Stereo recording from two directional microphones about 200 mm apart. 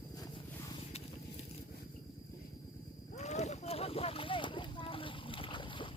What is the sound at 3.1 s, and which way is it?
Boat, 35° left (ahead or behind).